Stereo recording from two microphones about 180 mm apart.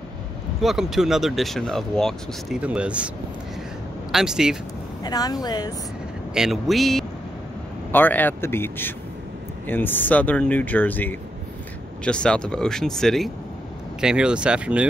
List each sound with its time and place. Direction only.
0.6 s speech: centre (ahead or behind)
4.1 s speech: 5° right (ahead or behind)
5.0 s speech: 20° left (ahead or behind)
6.3 s speech: centre (ahead or behind)